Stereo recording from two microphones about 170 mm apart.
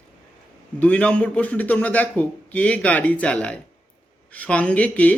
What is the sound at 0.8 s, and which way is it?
A man's voice, 10° left (ahead or behind).